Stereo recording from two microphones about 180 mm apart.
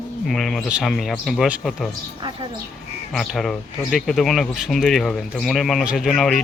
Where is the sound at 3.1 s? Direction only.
Centre (ahead or behind).